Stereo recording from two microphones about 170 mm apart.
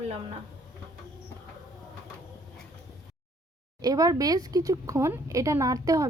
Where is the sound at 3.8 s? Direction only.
20° right (ahead or behind).